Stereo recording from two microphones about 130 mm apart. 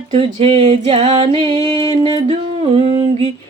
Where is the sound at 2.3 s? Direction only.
50° right (ahead or behind).